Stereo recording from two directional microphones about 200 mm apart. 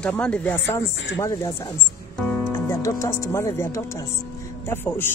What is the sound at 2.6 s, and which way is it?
Speech, 15° left (ahead or behind).